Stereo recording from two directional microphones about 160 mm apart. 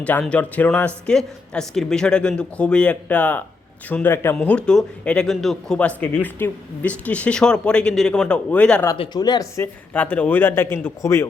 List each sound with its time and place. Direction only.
0.0 s speech: 10° left (ahead or behind)
9.0 s speech: 25° left (ahead or behind)
9.9 s speech: 10° left (ahead or behind)